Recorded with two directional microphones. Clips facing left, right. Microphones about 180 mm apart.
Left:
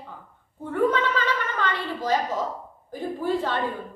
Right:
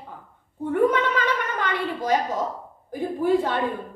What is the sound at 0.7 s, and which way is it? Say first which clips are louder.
A woman's voice: right 2 dB; 15° right (ahead or behind).